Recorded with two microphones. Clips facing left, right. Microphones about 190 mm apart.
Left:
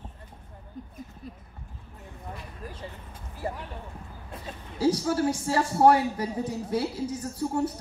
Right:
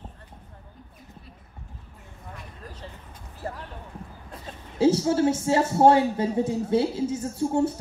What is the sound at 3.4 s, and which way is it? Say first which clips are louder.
Speech: left 2 dB; 10° left (ahead or behind).